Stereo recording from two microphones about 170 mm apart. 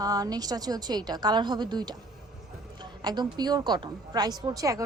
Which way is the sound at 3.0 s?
25° right (ahead or behind).